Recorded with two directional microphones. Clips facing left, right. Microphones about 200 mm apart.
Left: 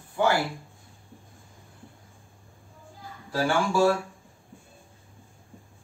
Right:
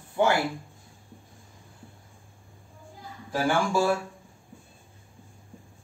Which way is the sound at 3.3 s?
15° right (ahead or behind).